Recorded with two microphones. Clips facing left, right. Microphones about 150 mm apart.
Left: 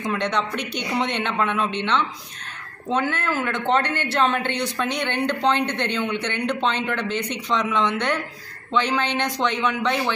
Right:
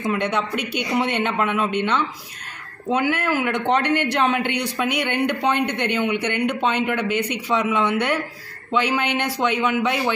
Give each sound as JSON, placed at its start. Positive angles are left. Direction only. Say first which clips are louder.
{"t": 0.0, "sound": "speech", "louder": "right 2 dB", "side_deg": -10}